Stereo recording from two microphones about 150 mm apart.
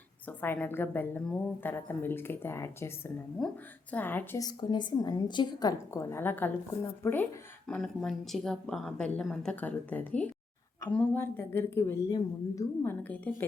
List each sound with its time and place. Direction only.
0.3 s a woman's voice: 15° left (ahead or behind)
3.4 s a woman's voice: 5° left (ahead or behind)
4.4 s a woman's voice: 30° left (ahead or behind); by 13.5 s 10° left (ahead or behind)